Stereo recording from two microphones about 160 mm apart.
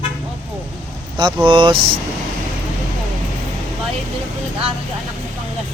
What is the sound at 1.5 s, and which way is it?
Speech, 30° right (ahead or behind).